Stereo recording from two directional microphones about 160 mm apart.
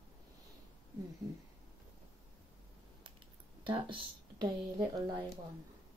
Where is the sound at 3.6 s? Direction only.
30° right (ahead or behind).